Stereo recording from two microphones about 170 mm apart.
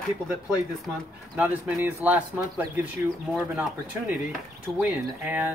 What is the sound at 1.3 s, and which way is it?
Speech, 10° right (ahead or behind).